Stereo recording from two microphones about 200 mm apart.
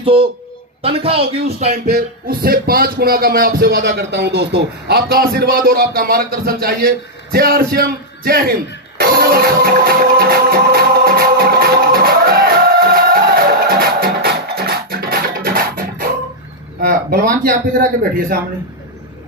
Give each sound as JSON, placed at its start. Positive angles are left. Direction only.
{"t": 0.0, "sound": "speech", "side_deg": -25}
{"t": 1.7, "sound": "speech", "side_deg": -50}
{"t": 9.0, "sound": "music", "side_deg": -50}
{"t": 16.8, "sound": "speech", "side_deg": -50}